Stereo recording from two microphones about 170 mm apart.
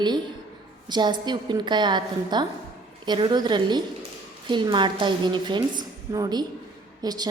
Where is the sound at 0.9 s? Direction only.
25° right (ahead or behind).